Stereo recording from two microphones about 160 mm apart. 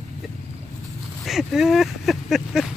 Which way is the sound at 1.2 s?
Centre (ahead or behind).